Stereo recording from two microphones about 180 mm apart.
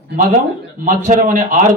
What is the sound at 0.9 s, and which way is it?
Speech, 45° right (ahead or behind).